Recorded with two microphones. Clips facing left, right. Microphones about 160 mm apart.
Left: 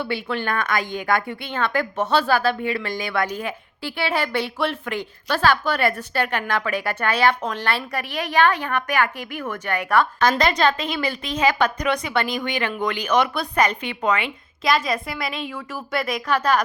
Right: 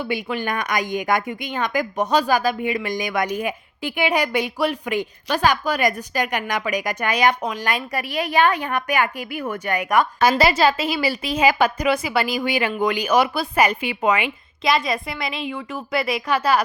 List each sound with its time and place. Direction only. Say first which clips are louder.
0.0 s a woman's voice: right 1 dB; 15° right (ahead or behind)